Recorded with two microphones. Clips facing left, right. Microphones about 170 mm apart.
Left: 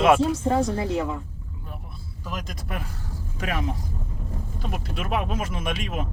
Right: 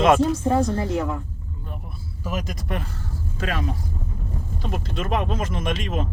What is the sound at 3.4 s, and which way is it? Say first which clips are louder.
Speech: right 1 dB; 15° left (ahead or behind).